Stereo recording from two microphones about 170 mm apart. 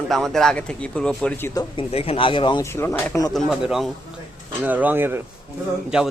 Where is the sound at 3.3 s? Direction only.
Centre (ahead or behind).